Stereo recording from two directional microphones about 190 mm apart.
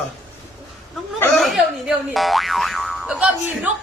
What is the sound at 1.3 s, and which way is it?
Speech, centre (ahead or behind).